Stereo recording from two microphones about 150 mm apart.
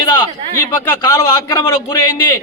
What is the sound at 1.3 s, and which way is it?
Speech, 15° left (ahead or behind).